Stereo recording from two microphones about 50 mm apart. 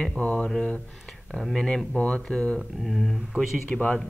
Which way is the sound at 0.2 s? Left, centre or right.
Left.